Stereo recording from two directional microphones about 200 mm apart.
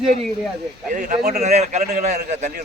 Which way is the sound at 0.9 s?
40° right (ahead or behind).